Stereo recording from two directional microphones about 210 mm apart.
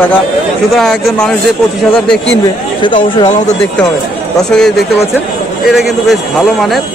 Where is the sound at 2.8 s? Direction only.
25° left (ahead or behind).